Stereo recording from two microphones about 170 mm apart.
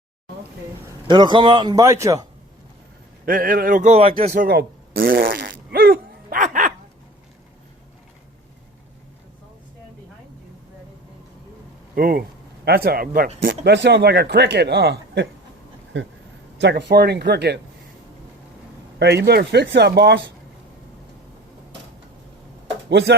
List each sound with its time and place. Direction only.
1.1 s speech: 30° right (ahead or behind)
3.2 s speech: 55° right (ahead or behind); by 4.1 s 40° right (ahead or behind)
4.3 s fart: 65° right (ahead or behind); by 6.7 s 50° right (ahead or behind)
11.9 s a man's voice: 60° right (ahead or behind)
13.7 s speech: 85° right
15.9 s speech: 90° right
18.9 s speech: 75° right (ahead or behind)
19.2 s speech: 65° right (ahead or behind); by 20.3 s 85° right
22.9 s speech: 90° right